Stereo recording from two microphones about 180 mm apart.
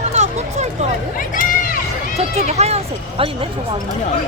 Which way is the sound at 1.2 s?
50° left (ahead or behind).